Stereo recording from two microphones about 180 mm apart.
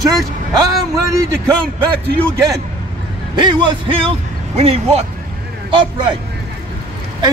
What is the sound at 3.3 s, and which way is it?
Speech, 25° right (ahead or behind).